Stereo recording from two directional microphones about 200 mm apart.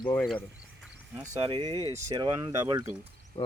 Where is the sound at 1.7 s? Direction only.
15° left (ahead or behind).